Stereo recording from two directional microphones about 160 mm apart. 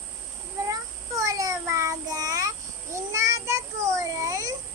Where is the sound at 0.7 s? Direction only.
20° right (ahead or behind).